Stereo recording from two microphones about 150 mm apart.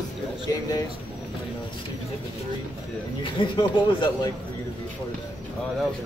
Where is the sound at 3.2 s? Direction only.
30° left (ahead or behind).